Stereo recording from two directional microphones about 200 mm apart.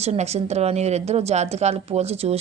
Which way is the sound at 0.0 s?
30° right (ahead or behind).